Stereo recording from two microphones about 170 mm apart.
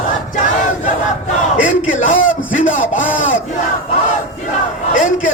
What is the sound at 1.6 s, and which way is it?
Speech, 50° left (ahead or behind).